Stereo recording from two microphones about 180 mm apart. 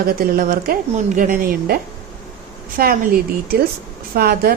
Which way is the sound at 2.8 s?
55° right (ahead or behind).